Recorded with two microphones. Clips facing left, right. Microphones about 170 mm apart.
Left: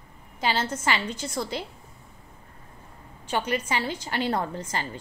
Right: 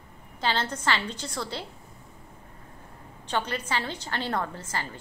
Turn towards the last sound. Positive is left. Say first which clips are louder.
# left 2 dB
turn(degrees=20)  # may be behind; listen again after turning